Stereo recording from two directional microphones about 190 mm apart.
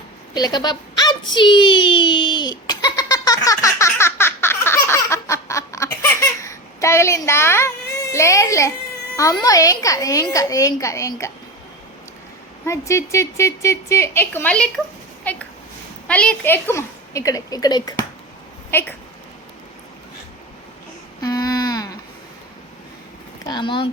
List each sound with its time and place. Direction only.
0.3 s a sound: 20° left (ahead or behind)
9.1 s a woman's voice: 15° left (ahead or behind)
12.6 s a woman's voice: 15° left (ahead or behind)
18.7 s a woman's voice: 10° left (ahead or behind)
21.2 s a sound: 20° left (ahead or behind)
23.5 s speech: 25° left (ahead or behind)